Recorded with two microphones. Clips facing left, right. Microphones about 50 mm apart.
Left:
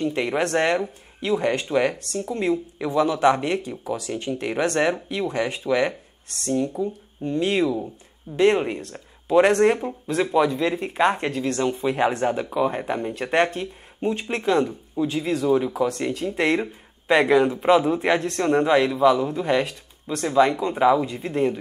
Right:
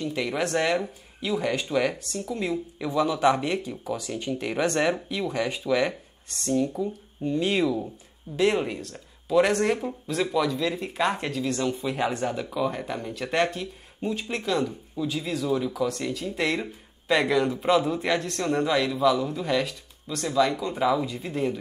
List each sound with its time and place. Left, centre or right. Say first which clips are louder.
0.0 s a man's voice: left 4 dB; left
0.6 s a man's voice: left 3 dB; left